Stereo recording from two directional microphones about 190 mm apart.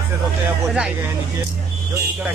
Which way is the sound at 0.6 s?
5° right (ahead or behind).